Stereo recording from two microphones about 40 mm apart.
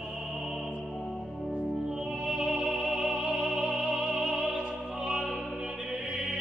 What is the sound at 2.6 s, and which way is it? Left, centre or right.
Music, right.